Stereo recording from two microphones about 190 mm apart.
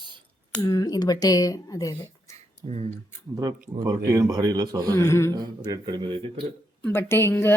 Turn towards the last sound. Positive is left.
turn(degrees=10)  # may be behind; listen again after turning